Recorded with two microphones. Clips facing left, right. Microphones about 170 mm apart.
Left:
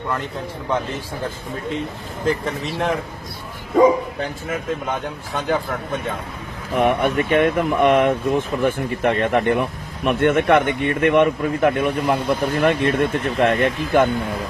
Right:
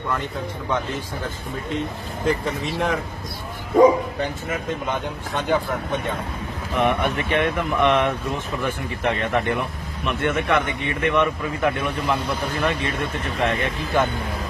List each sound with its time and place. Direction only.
2.2 s a man's voice: centre (ahead or behind)
6.7 s speech: 45° left (ahead or behind)